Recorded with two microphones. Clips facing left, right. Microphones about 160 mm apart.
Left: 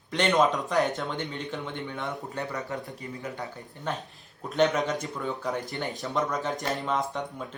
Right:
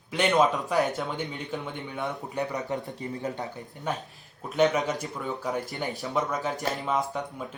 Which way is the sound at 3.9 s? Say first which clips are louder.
Right 1 dB; 10° right (ahead or behind).